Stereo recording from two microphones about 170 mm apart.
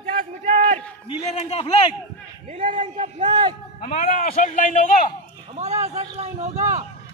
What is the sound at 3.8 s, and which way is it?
Speech, 40° left (ahead or behind).